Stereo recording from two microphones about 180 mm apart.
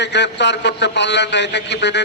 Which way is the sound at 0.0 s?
75° left (ahead or behind).